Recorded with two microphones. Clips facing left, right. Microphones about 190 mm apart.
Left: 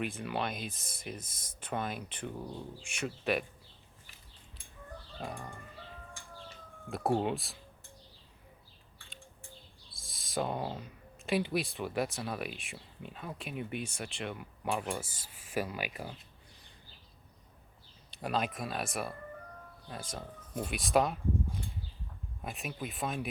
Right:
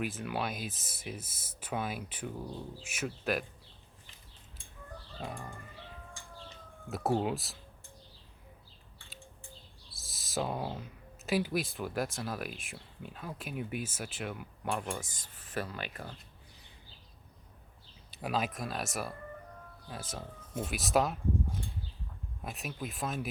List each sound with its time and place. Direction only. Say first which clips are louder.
0.0 s speech: even; 5° right (ahead or behind)
5.2 s speech: even; centre (ahead or behind)
6.8 s speech: even; 5° right (ahead or behind)
10.0 s speech: even; 5° right (ahead or behind)
18.1 s speech: even; 5° right (ahead or behind)